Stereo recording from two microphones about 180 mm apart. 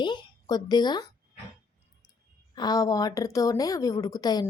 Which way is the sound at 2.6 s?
20° left (ahead or behind).